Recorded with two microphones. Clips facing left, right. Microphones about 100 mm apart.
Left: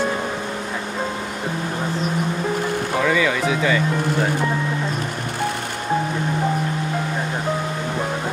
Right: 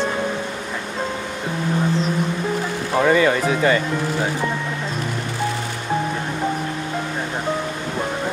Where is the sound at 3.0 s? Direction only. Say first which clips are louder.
Right 5 dB; 40° right (ahead or behind).